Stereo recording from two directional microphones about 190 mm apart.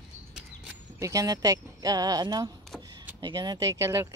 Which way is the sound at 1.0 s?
15° right (ahead or behind).